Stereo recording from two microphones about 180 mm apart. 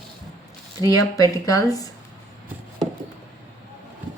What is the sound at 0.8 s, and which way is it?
Speech, 20° left (ahead or behind).